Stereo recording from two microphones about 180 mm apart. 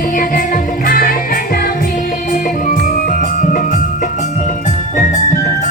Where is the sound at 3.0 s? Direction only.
45° left (ahead or behind).